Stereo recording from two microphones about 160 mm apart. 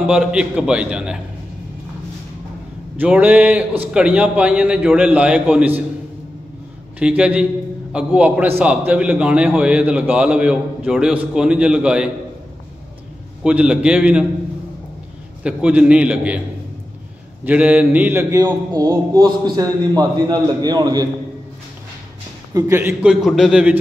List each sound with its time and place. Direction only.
0.0 s a man's voice: 5° right (ahead or behind)
3.0 s a man's voice: 10° right (ahead or behind)
7.0 s a man's voice: 5° right (ahead or behind)
13.4 s a man's voice: 5° right (ahead or behind)
15.4 s a man's voice: 5° right (ahead or behind)
17.5 s a man's voice: 10° right (ahead or behind); by 21.1 s 25° right (ahead or behind)
22.5 s a man's voice: 20° right (ahead or behind)
23.0 s a man's voice: centre (ahead or behind)